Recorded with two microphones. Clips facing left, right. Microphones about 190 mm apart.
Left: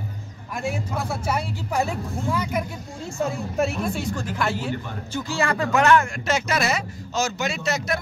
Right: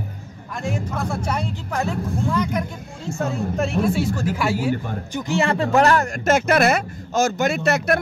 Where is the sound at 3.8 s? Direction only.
5° right (ahead or behind).